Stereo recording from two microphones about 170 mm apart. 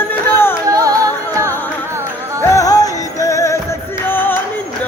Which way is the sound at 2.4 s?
20° left (ahead or behind).